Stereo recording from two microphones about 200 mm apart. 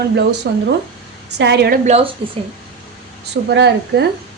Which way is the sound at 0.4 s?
55° right (ahead or behind).